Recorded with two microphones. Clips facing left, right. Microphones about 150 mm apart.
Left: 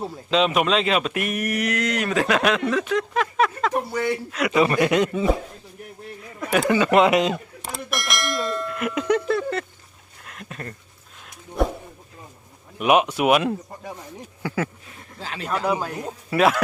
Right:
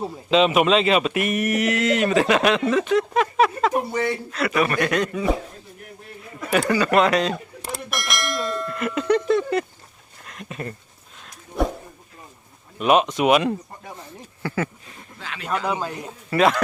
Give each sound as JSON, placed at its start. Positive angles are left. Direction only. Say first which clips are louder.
{"t": 0.0, "sound": "speech", "louder": "right 3 dB", "side_deg": 0}
{"t": 6.7, "sound": "speech", "louder": "left 2 dB", "side_deg": 15}
{"t": 7.6, "sound": "clang", "louder": "even", "side_deg": 0}
{"t": 9.5, "sound": "speech", "louder": "right 5 dB", "side_deg": -10}
{"t": 10.2, "sound": "speech", "louder": "right 3 dB", "side_deg": 0}
{"t": 11.2, "sound": "a sound", "louder": "even", "side_deg": 0}
{"t": 12.8, "sound": "speech", "louder": "even", "side_deg": 10}
{"t": 15.2, "sound": "speech", "louder": "left 3 dB", "side_deg": 35}
{"t": 15.6, "sound": "speech", "louder": "left 2 dB", "side_deg": 5}